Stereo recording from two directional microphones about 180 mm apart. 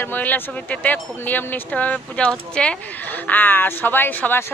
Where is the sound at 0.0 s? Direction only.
10° left (ahead or behind).